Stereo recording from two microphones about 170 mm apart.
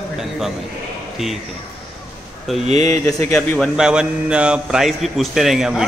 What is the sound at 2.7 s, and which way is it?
Speech, 40° right (ahead or behind).